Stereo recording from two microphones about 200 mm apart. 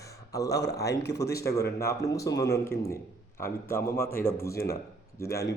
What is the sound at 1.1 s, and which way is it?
Speech, 55° left (ahead or behind).